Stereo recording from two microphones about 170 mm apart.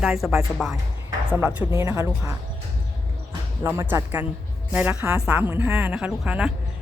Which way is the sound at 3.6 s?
15° right (ahead or behind).